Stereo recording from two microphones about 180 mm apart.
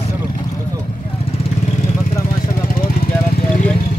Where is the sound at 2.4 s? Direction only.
50° left (ahead or behind).